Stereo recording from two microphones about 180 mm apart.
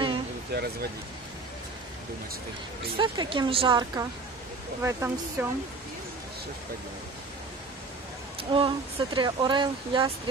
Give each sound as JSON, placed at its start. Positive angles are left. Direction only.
{"t": 0.5, "sound": "speech", "side_deg": -65}
{"t": 3.0, "sound": "speech", "side_deg": -25}
{"t": 8.4, "sound": "speech", "side_deg": -30}